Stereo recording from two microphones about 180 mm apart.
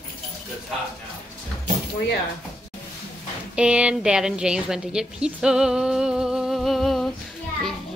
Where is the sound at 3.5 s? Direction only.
5° right (ahead or behind).